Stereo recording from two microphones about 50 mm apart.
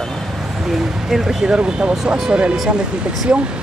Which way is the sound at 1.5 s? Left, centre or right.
Centre.